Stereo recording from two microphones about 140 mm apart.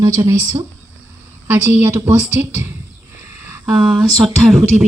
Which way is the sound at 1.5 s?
10° right (ahead or behind).